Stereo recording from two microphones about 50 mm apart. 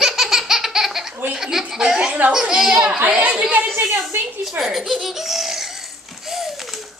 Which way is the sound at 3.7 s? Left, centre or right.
Right.